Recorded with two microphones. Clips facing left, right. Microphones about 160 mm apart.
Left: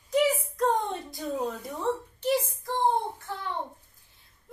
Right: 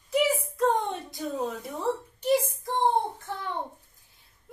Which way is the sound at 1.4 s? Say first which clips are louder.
Right 1 dB; 15° right (ahead or behind).